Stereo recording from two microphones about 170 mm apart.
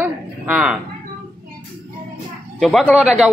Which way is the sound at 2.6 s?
5° left (ahead or behind).